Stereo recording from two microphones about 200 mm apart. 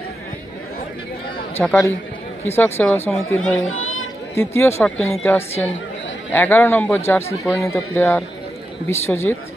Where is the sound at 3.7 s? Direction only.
90° left.